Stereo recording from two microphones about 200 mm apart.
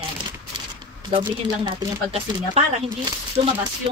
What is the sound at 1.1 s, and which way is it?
Speech, 25° right (ahead or behind).